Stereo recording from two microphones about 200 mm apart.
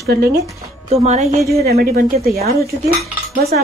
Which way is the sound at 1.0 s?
35° right (ahead or behind).